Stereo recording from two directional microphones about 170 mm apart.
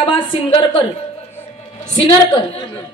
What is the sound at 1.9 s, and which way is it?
Speech, 25° left (ahead or behind).